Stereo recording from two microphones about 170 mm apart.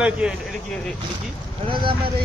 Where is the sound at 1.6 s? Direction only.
30° right (ahead or behind).